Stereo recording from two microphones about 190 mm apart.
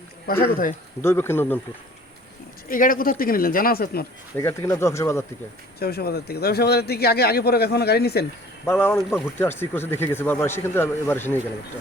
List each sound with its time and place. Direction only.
0.3 s speech: 50° left (ahead or behind)
1.0 s speech: 10° left (ahead or behind)
2.6 s speech: 45° left (ahead or behind)
4.4 s speech: 15° left (ahead or behind)
5.8 s a man's voice: 55° left (ahead or behind)
8.6 s speech: 10° left (ahead or behind)
9.0 s speech: 5° right (ahead or behind)
9.2 s speech: 10° left (ahead or behind)